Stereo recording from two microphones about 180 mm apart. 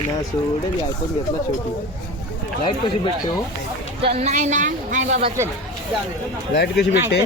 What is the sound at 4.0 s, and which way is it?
Speech, 35° right (ahead or behind).